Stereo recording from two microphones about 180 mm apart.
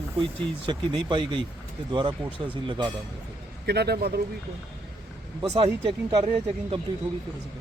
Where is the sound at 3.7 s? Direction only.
65° right (ahead or behind).